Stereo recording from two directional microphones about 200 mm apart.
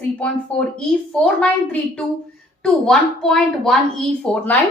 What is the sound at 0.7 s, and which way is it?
A woman's voice, 5° left (ahead or behind).